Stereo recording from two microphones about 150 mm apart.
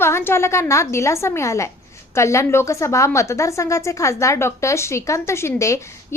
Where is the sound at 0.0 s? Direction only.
15° left (ahead or behind).